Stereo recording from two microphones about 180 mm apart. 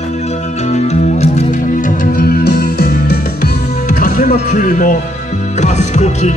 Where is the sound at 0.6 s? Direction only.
40° left (ahead or behind).